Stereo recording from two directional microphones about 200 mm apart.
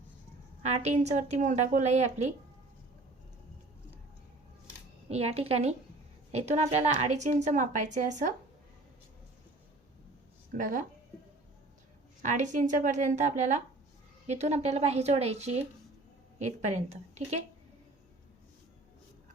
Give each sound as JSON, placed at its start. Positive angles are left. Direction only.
{"t": 0.6, "sound": "a woman's voice", "side_deg": -35}
{"t": 5.0, "sound": "a woman's voice", "side_deg": -30}
{"t": 10.6, "sound": "a woman's voice", "side_deg": -40}
{"t": 12.2, "sound": "a woman's voice", "side_deg": -40}